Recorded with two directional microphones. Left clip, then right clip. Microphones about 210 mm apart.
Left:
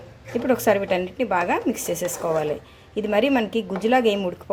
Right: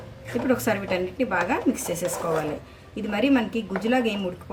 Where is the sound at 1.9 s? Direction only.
Centre (ahead or behind).